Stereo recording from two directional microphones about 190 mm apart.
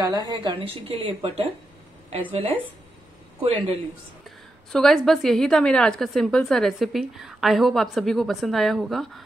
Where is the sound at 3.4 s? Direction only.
30° right (ahead or behind).